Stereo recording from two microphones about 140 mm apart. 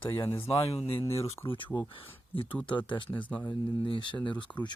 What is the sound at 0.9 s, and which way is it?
Speech, 15° left (ahead or behind).